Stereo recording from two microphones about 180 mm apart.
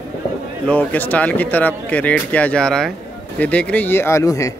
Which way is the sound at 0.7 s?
10° left (ahead or behind).